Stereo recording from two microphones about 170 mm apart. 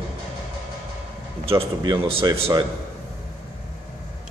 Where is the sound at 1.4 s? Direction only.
30° right (ahead or behind).